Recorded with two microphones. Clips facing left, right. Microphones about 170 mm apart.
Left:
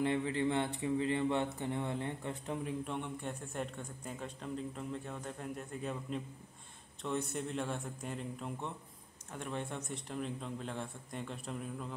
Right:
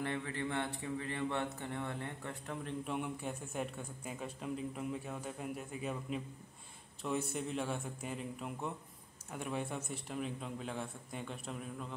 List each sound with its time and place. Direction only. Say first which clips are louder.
0.0 s a man's voice: left 6 dB; 20° left (ahead or behind)
2.8 s a man's voice: right 1 dB; 5° right (ahead or behind)